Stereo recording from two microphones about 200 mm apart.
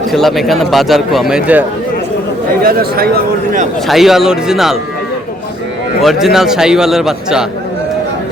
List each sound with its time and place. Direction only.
0.1 s a man's voice: centre (ahead or behind)
2.6 s speech: 50° right (ahead or behind)
3.8 s a man's voice: centre (ahead or behind)
6.0 s a man's voice: centre (ahead or behind)